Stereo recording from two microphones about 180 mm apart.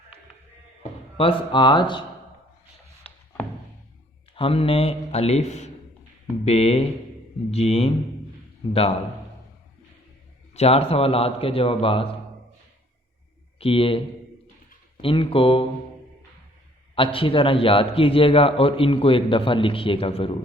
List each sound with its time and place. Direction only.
0.8 s speech: 30° left (ahead or behind)
3.1 s a sound: 5° left (ahead or behind)
4.4 s a man's voice: 30° left (ahead or behind)
10.5 s a man's voice: 35° left (ahead or behind)
13.6 s a man's voice: 30° left (ahead or behind)
15.0 s a man's voice: 30° left (ahead or behind)
16.9 s a man's voice: 30° left (ahead or behind)